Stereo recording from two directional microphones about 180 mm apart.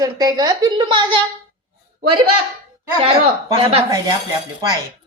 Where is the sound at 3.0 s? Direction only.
30° right (ahead or behind).